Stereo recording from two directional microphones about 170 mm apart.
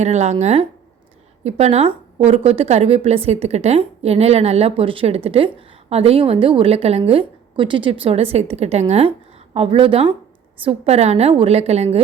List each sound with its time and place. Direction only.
0.0 s a woman's voice: 40° right (ahead or behind)